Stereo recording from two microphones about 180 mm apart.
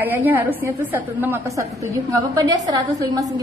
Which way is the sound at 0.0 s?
10° right (ahead or behind).